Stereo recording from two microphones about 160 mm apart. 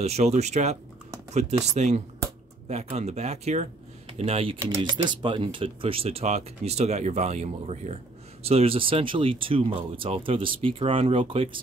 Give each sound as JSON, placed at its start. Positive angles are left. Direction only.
{"t": 0.0, "sound": "speech", "side_deg": -45}